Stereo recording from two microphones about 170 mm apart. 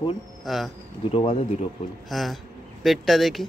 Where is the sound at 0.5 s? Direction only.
Centre (ahead or behind).